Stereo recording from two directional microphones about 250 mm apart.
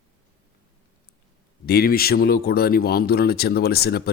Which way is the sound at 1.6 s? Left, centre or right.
Left.